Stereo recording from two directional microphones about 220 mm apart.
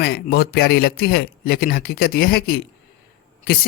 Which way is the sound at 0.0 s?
45° left (ahead or behind).